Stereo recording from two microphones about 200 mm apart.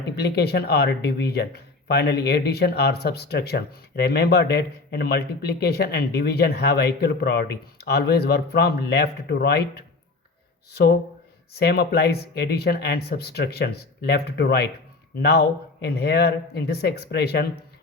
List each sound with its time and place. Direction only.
0.2 s speech: 55° left (ahead or behind)